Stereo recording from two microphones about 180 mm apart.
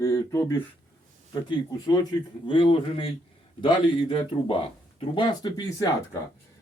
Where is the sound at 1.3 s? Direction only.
20° left (ahead or behind).